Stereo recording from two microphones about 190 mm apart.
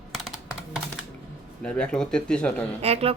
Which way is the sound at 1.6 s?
5° left (ahead or behind).